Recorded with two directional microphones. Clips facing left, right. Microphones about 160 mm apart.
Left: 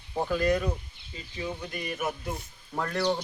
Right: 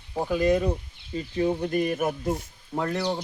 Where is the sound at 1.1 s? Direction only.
45° right (ahead or behind).